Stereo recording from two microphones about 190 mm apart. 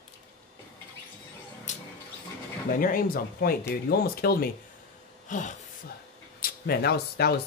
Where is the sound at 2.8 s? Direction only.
50° left (ahead or behind).